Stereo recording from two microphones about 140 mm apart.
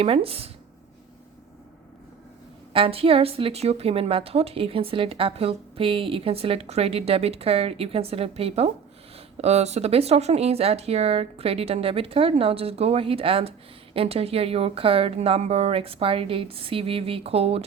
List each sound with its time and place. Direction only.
0.0 s speech: 45° right (ahead or behind)
2.7 s speech: 40° right (ahead or behind)